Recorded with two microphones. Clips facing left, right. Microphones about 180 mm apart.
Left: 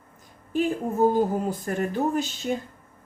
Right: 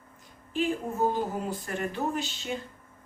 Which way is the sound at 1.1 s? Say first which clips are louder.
Left 7 dB; 45° left (ahead or behind).